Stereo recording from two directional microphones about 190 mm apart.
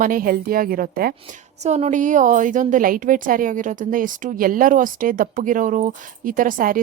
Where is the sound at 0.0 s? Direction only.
50° right (ahead or behind).